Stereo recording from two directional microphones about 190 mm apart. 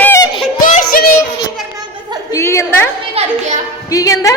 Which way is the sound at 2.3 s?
15° left (ahead or behind).